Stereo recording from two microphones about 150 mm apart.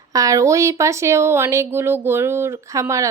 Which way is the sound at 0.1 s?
20° right (ahead or behind).